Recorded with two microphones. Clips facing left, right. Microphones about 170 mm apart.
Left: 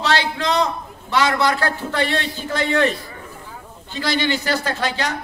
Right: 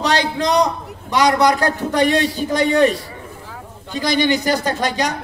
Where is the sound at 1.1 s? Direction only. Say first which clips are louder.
Right 4 dB; 15° right (ahead or behind).